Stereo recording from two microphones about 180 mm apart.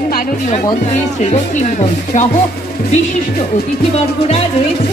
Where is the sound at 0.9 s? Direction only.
40° left (ahead or behind).